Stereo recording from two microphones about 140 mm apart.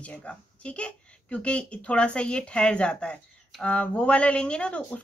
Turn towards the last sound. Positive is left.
turn(degrees=10)  # may be behind; listen again after turning